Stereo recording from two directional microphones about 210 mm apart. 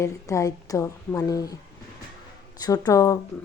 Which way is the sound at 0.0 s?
15° left (ahead or behind).